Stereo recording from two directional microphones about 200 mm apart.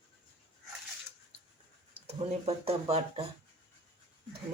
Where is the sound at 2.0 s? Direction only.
30° right (ahead or behind).